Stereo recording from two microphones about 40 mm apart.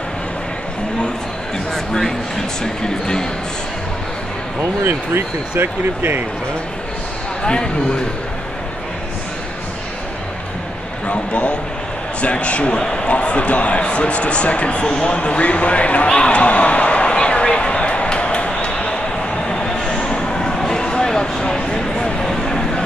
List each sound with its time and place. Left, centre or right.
1.7 s speech: centre
4.6 s speech: right
7.4 s speech: left
11.1 s a man's voice: left
14.9 s speech: left
15.1 s speech: left
16.1 s a sound: left
19.5 s a sound: centre